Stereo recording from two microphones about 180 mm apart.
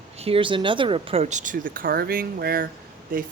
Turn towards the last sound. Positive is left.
turn(degrees=-50)  # may be behind; listen again after turning